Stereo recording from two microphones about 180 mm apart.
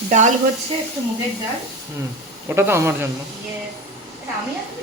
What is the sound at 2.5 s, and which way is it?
Speech, 15° right (ahead or behind).